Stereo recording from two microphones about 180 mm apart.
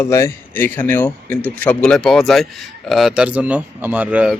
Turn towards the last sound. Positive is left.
turn(degrees=-5)  # may be behind; listen again after turning